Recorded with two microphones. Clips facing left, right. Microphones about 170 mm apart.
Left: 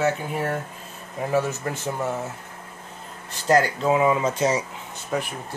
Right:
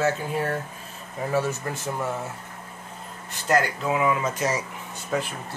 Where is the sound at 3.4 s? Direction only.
25° left (ahead or behind).